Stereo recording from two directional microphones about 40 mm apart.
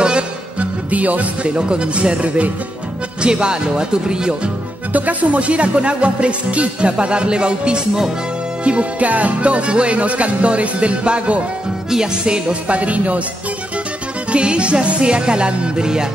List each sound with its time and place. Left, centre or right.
0.0 s music: right
0.8 s music: right
1.5 s speech: right
3.2 s speech: right
4.9 s speech: right
8.6 s music: right
11.9 s speech: centre
12.6 s music: right
14.3 s speech: right